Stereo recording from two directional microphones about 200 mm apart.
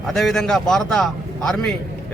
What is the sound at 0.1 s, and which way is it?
Speech, centre (ahead or behind).